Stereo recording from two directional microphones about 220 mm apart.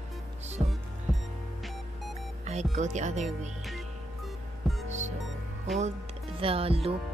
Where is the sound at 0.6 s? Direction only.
25° right (ahead or behind).